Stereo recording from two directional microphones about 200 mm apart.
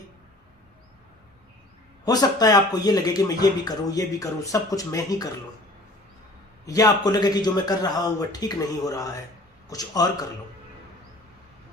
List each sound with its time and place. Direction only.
2.0 s speech: 20° left (ahead or behind)
6.7 s a man's voice: 20° left (ahead or behind)